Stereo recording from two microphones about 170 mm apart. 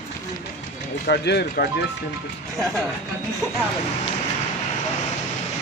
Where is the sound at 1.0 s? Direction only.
70° left (ahead or behind).